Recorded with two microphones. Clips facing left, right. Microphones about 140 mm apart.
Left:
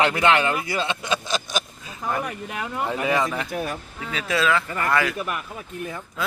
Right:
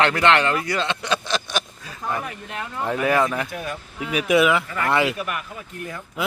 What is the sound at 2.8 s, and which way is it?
Speech, centre (ahead or behind).